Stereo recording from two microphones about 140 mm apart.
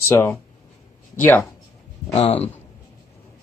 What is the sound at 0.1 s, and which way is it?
Speech, 10° left (ahead or behind).